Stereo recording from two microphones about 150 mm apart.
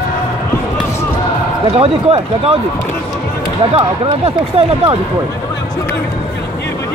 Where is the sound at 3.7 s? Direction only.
40° right (ahead or behind).